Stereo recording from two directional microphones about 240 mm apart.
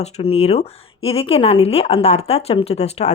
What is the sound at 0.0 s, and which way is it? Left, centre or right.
Speech, left.